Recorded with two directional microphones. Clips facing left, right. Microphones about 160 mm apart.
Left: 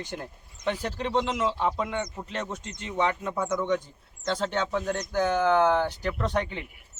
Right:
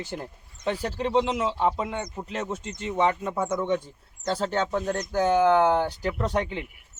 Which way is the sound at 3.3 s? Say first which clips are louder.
Right 1 dB; 30° right (ahead or behind).